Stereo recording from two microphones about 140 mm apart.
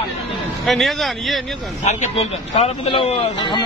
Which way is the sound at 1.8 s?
60° left (ahead or behind).